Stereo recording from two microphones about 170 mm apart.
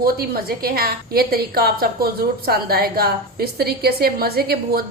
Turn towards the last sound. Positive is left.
turn(degrees=-65)  # may be behind; listen again after turning